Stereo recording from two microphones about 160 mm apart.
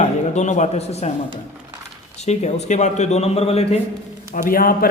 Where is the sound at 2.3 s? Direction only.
45° left (ahead or behind).